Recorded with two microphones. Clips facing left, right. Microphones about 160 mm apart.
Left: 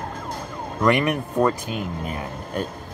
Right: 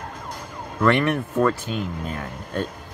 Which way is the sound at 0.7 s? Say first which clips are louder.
Even; 15° left (ahead or behind).